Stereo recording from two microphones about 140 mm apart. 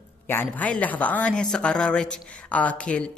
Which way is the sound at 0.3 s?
15° left (ahead or behind).